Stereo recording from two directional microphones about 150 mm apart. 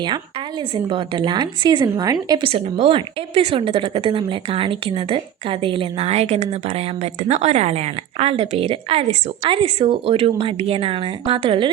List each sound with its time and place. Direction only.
0.9 s a woman's voice: 35° right (ahead or behind)